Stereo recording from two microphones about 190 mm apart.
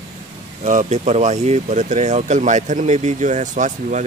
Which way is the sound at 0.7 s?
40° right (ahead or behind).